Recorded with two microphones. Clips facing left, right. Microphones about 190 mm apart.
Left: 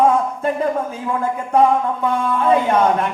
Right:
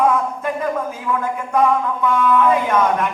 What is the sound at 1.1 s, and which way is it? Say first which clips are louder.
Speech: left 2 dB; 30° left (ahead or behind).